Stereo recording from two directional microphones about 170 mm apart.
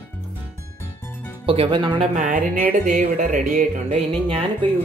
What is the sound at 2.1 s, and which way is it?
Speech, 50° right (ahead or behind).